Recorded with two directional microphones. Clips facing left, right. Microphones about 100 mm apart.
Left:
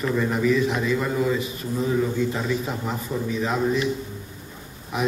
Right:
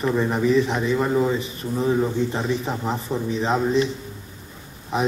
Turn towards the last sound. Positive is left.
turn(degrees=-30)  # may be behind; listen again after turning